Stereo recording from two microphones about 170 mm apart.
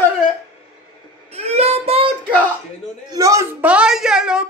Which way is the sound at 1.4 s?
40° right (ahead or behind).